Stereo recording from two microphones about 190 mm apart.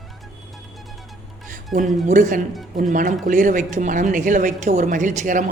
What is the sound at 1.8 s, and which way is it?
Speech, 40° right (ahead or behind).